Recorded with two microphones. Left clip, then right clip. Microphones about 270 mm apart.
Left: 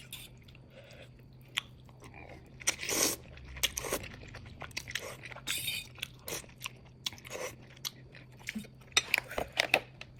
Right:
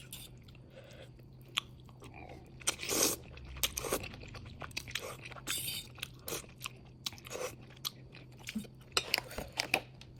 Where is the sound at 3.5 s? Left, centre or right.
Centre.